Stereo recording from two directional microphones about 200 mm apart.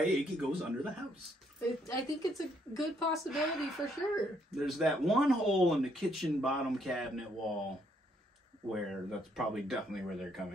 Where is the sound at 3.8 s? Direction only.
20° left (ahead or behind).